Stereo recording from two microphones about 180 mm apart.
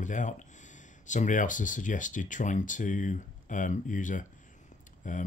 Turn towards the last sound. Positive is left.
turn(degrees=45)  # may be behind; listen again after turning